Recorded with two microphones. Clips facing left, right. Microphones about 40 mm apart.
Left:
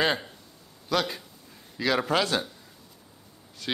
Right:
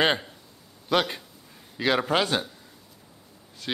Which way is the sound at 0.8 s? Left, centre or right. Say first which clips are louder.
Right 3 dB; right.